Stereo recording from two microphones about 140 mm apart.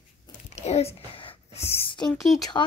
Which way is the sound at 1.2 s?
40° left (ahead or behind).